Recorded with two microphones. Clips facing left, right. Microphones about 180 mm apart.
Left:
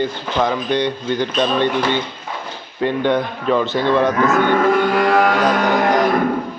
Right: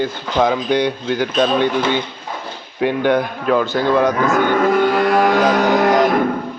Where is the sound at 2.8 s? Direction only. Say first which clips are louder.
Right 1 dB; 5° right (ahead or behind).